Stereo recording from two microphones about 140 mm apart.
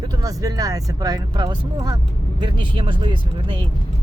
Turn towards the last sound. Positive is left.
turn(degrees=-35)  # may be behind; listen again after turning